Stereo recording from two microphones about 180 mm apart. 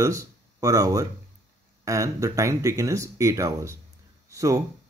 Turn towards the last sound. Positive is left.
turn(degrees=-20)  # may be behind; listen again after turning